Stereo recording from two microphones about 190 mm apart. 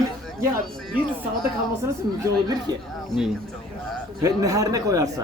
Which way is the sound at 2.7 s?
20° right (ahead or behind).